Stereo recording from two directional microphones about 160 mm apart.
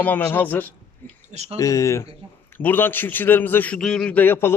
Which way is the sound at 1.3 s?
40° right (ahead or behind).